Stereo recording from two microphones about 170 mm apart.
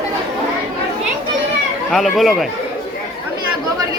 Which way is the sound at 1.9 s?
Centre (ahead or behind).